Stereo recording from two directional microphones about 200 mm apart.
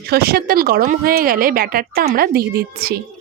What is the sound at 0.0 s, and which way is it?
Speech, 50° right (ahead or behind).